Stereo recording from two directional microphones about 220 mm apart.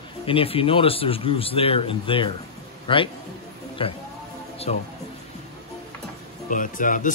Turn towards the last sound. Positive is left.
turn(degrees=35)  # may be behind; listen again after turning